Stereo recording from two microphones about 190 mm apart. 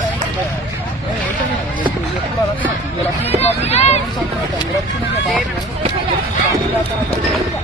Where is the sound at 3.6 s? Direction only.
35° left (ahead or behind).